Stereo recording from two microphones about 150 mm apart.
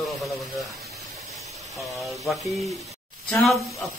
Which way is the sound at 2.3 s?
Centre (ahead or behind).